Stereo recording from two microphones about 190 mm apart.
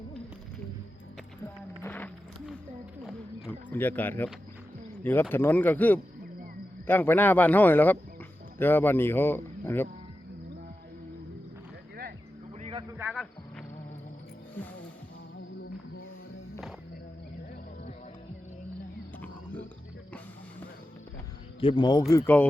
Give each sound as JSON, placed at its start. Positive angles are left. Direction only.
{"t": 1.8, "sound": "music", "side_deg": 10}
{"t": 3.7, "sound": "speech", "side_deg": 10}
{"t": 12.5, "sound": "a sound", "side_deg": -30}
{"t": 12.9, "sound": "cricket", "side_deg": -10}
{"t": 21.6, "sound": "speech", "side_deg": 25}
{"t": 22.1, "sound": "speech", "side_deg": 10}